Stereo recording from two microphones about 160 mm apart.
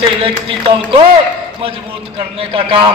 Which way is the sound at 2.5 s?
35° right (ahead or behind).